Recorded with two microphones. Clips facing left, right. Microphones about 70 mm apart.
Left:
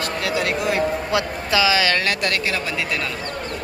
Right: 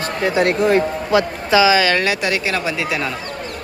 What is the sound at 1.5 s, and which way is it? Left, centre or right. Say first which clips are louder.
Speech: right 5 dB; centre.